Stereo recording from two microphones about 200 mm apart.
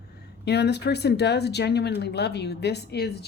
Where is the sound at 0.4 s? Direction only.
55° left (ahead or behind).